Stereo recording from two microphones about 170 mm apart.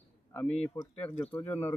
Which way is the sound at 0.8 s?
25° left (ahead or behind).